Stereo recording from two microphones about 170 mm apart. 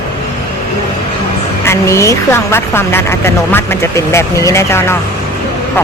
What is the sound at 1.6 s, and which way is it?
A woman's voice, 15° left (ahead or behind).